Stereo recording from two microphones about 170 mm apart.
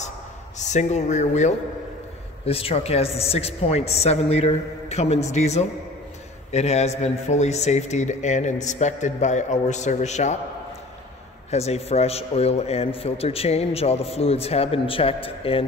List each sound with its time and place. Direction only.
0.6 s a man's voice: 45° left (ahead or behind)
11.5 s a man's voice: 40° left (ahead or behind)